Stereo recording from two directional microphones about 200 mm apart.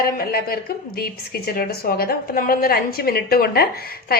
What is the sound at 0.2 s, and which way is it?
A woman's voice, 50° left (ahead or behind).